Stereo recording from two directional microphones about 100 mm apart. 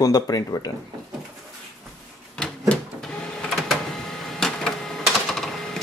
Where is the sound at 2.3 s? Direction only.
10° left (ahead or behind).